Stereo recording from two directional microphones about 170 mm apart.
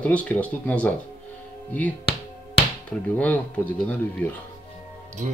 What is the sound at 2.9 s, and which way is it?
Speech, 10° left (ahead or behind).